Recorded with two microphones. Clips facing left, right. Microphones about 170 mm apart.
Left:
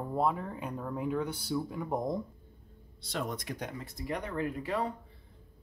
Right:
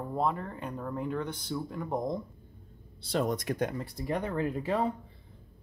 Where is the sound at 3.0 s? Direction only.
35° right (ahead or behind); by 3.7 s 50° right (ahead or behind).